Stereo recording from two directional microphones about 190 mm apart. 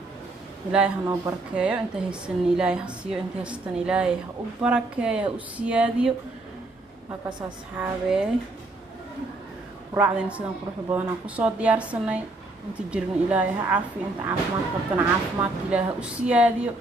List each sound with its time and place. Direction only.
0.7 s a woman's voice: 5° right (ahead or behind)
7.1 s a woman's voice: 25° right (ahead or behind)
7.7 s a woman's voice: 5° right (ahead or behind)
9.9 s speech: 5° right (ahead or behind)